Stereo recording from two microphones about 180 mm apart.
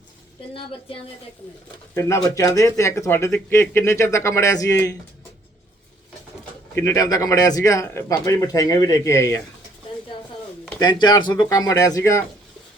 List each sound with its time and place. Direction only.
2.0 s speech: 15° left (ahead or behind)
6.7 s speech: 15° left (ahead or behind)
10.8 s speech: 25° left (ahead or behind)